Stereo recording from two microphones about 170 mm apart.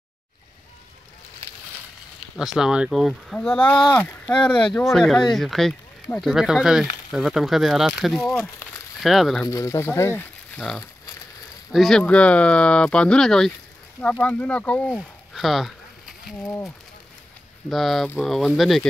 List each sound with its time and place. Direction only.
2.3 s speech: 5° right (ahead or behind)
3.7 s speech: 25° left (ahead or behind)
4.0 s speech: 10° left (ahead or behind)
4.7 s speech: centre (ahead or behind)
9.4 s speech: 20° left (ahead or behind); by 16.3 s centre (ahead or behind)
16.4 s speech: 15° left (ahead or behind)
17.6 s speech: centre (ahead or behind)